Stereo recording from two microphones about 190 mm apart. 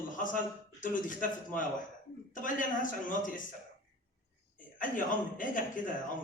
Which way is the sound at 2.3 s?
45° left (ahead or behind).